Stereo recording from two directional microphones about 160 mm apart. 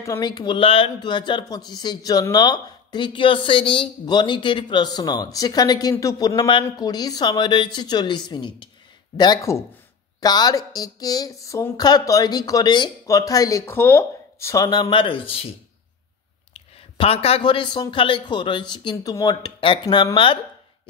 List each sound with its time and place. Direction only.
0.0 s speech: 20° left (ahead or behind)
16.5 s speech: 35° left (ahead or behind)